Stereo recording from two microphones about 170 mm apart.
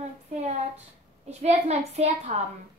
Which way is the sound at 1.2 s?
40° right (ahead or behind).